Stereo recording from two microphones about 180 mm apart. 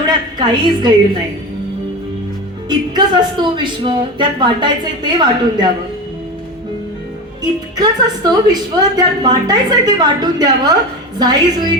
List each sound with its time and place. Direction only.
0.0 s a woman's voice: 25° right (ahead or behind)
2.6 s speech: 25° right (ahead or behind)
7.8 s speech: 20° right (ahead or behind)